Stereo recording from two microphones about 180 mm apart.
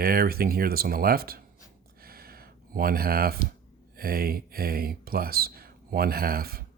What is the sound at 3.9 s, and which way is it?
Speech, 55° right (ahead or behind).